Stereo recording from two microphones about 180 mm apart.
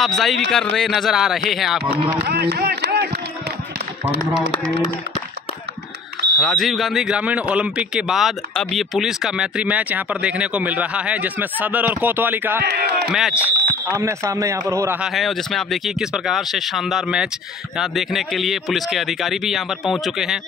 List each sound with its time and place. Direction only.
0.0 s a man's voice: centre (ahead or behind)
2.2 s speech: 60° right (ahead or behind)
6.4 s speech: centre (ahead or behind)
12.6 s speech: 65° right (ahead or behind)
13.1 s a man's voice: 5° right (ahead or behind)
13.8 s a man's voice: 15° right (ahead or behind)